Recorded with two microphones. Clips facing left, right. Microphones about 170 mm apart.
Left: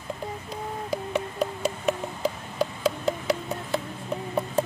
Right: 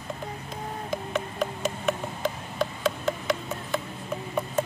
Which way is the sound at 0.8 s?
35° left (ahead or behind).